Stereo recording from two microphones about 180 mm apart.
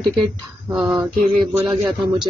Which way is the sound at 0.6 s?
5° right (ahead or behind).